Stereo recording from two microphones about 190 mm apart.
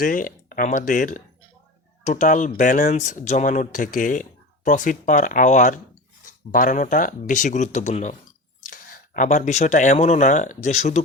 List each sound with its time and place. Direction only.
0.0 s speech: 45° left (ahead or behind)